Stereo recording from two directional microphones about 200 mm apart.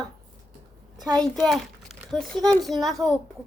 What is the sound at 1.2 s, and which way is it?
A child's voice, centre (ahead or behind).